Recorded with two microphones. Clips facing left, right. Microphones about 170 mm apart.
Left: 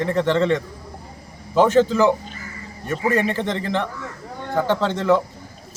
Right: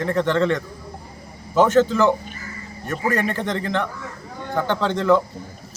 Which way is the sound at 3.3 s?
30° left (ahead or behind).